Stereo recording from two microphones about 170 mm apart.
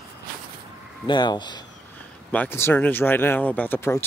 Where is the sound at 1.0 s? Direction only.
25° left (ahead or behind).